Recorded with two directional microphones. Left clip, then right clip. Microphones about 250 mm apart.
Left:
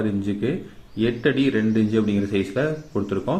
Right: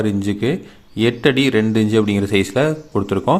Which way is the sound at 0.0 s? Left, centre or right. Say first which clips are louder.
Right 5 dB; right.